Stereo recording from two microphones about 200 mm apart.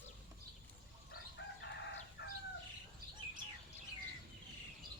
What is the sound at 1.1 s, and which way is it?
Chicken, 60° left (ahead or behind).